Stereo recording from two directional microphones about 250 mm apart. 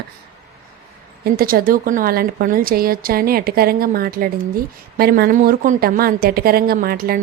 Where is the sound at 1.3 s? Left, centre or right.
Right.